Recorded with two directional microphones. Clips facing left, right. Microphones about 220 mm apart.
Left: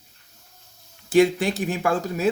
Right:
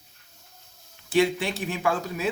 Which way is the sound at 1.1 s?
45° left (ahead or behind).